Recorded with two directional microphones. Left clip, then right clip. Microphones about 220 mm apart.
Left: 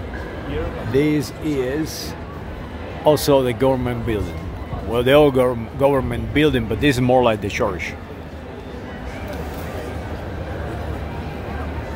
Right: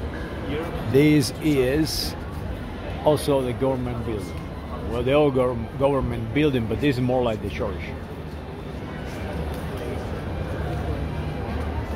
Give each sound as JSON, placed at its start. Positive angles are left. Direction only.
{"t": 0.9, "sound": "speech", "side_deg": -10}
{"t": 3.1, "sound": "speech", "side_deg": 15}